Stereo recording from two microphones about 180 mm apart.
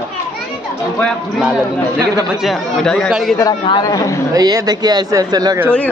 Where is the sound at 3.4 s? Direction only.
25° left (ahead or behind).